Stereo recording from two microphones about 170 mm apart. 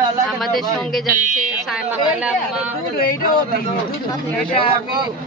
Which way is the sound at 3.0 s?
55° left (ahead or behind).